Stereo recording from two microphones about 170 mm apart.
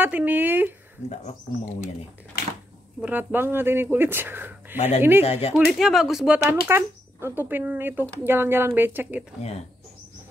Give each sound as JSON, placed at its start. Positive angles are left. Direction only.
{"t": 0.0, "sound": "speech", "side_deg": -10}
{"t": 1.0, "sound": "speech", "side_deg": 40}
{"t": 3.0, "sound": "speech", "side_deg": -10}
{"t": 4.7, "sound": "speech", "side_deg": 40}
{"t": 5.5, "sound": "speech", "side_deg": 0}